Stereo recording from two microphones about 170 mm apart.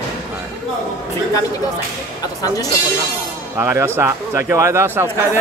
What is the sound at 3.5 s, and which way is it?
Speech, 15° right (ahead or behind).